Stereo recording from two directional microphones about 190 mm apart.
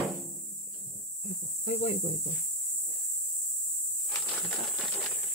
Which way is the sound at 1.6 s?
35° left (ahead or behind).